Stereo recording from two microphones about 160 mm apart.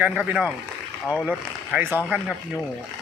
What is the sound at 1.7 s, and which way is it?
Speech, 10° right (ahead or behind).